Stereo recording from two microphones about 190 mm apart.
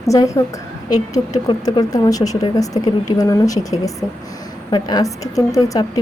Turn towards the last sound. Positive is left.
turn(degrees=20)  # may be behind; listen again after turning